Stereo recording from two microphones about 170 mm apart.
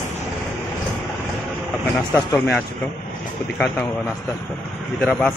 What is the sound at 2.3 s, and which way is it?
Speech, centre (ahead or behind).